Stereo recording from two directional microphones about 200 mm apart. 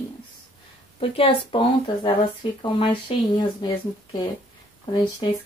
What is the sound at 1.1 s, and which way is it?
Speech, 25° left (ahead or behind).